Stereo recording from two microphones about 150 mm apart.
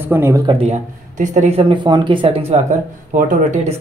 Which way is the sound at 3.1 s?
55° right (ahead or behind).